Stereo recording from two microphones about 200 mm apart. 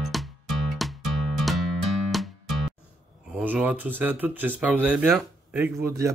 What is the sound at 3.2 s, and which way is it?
Speech, 5° right (ahead or behind).